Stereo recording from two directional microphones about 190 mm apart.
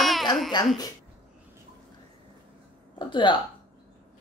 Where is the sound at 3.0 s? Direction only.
25° left (ahead or behind).